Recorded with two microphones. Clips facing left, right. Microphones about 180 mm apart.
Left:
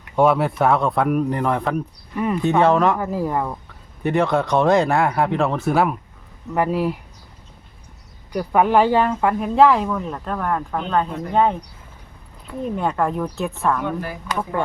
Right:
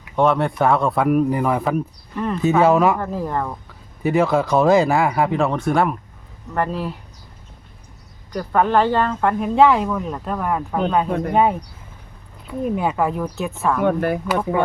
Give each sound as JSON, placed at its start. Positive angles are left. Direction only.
{"t": 0.2, "sound": "speech", "side_deg": 5}
{"t": 2.1, "sound": "speech", "side_deg": 10}
{"t": 2.4, "sound": "speech", "side_deg": -5}
{"t": 3.0, "sound": "speech", "side_deg": 10}
{"t": 4.0, "sound": "speech", "side_deg": 0}
{"t": 8.3, "sound": "speech", "side_deg": 10}
{"t": 12.5, "sound": "speech", "side_deg": -5}
{"t": 13.8, "sound": "speech", "side_deg": -60}